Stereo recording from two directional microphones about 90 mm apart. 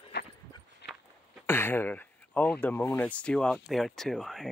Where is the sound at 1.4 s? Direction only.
25° left (ahead or behind).